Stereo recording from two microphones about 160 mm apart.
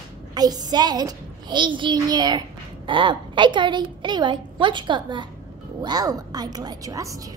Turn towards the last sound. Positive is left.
turn(degrees=-20)  # may be behind; listen again after turning